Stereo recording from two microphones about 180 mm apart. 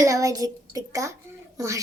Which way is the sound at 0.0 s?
20° right (ahead or behind).